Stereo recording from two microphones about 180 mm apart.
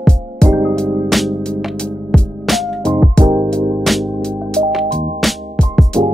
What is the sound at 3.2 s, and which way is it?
Music, 25° right (ahead or behind).